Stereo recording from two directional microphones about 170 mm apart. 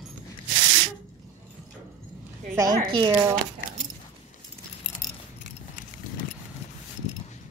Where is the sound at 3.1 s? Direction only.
15° right (ahead or behind).